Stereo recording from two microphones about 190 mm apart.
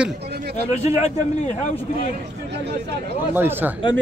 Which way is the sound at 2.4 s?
65° right (ahead or behind).